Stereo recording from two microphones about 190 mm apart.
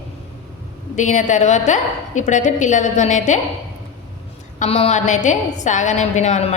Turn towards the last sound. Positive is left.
turn(degrees=35)  # may be behind; listen again after turning